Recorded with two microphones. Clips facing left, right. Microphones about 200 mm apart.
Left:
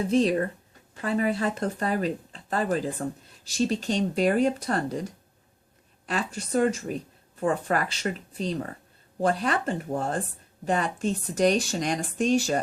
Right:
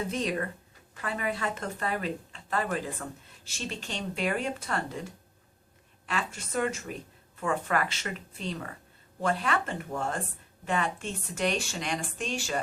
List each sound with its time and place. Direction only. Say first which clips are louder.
0.1 s speech: left 9 dB; 30° left (ahead or behind)